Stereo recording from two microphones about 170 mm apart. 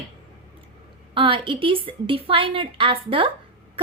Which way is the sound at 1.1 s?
30° right (ahead or behind).